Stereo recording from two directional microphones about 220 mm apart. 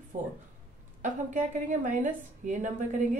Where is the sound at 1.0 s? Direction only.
35° right (ahead or behind).